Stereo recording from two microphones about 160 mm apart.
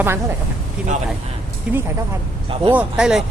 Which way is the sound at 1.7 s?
5° right (ahead or behind).